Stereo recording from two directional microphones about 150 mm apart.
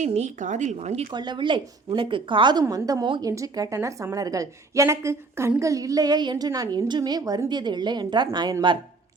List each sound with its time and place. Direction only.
0.0 s a woman's voice: 50° right (ahead or behind)
1.1 s a woman's voice: 30° right (ahead or behind)